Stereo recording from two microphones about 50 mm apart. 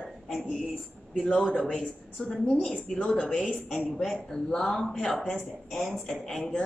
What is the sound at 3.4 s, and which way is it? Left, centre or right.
Speech, centre.